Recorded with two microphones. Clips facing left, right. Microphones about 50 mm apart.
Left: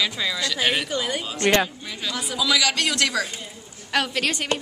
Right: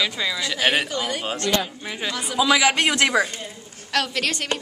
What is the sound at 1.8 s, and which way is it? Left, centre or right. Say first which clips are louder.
A man's voice: right 2 dB; right.